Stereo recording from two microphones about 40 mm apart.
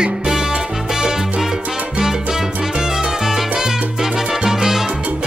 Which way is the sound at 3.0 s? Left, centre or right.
Centre.